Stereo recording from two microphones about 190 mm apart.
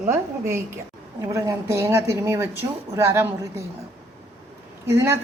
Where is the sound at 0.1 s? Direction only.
15° right (ahead or behind).